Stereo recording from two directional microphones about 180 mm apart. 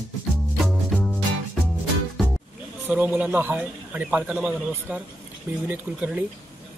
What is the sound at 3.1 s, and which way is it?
A man's voice, 10° right (ahead or behind).